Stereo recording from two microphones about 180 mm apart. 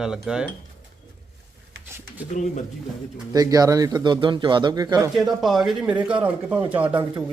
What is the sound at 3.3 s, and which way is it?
Speech, 20° right (ahead or behind).